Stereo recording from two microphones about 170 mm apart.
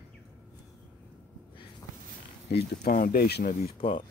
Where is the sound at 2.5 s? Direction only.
65° left (ahead or behind).